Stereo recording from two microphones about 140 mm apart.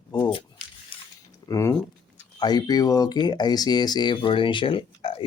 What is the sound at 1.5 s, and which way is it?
Speech, 20° left (ahead or behind).